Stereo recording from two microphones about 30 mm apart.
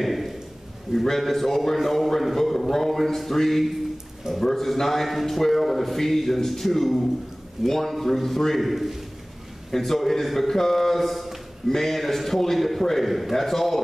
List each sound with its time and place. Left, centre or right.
0.0 s a man's voice: centre
0.9 s a man's voice: centre
1.2 s a man's voice: centre
8.5 s a man's voice: centre
9.7 s a man's voice: centre